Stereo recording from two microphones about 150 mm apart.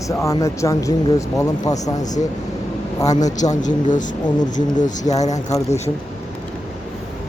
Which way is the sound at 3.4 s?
55° left (ahead or behind).